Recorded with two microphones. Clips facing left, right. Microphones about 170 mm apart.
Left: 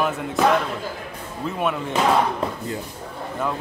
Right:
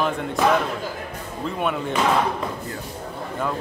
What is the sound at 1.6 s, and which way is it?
Speech, centre (ahead or behind).